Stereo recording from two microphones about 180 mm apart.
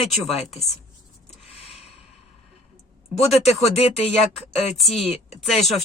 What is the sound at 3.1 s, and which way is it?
Speech, 35° left (ahead or behind).